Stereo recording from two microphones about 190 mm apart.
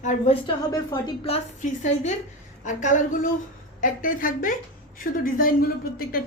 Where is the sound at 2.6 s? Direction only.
40° left (ahead or behind).